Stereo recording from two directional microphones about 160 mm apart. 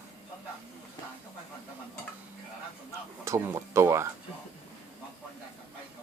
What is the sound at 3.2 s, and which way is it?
Speech, 20° right (ahead or behind).